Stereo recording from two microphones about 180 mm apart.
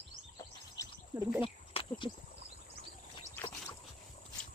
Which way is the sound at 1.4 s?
30° left (ahead or behind).